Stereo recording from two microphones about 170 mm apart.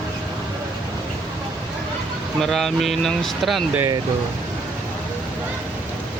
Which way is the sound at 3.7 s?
20° right (ahead or behind).